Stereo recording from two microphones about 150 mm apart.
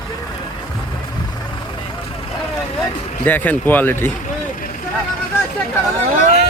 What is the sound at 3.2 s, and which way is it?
Speech, 10° left (ahead or behind).